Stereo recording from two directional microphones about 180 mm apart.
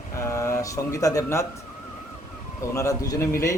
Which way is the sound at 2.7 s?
15° left (ahead or behind).